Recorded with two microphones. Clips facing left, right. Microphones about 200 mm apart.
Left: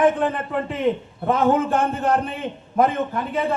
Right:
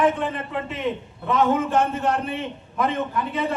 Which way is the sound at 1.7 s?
50° left (ahead or behind).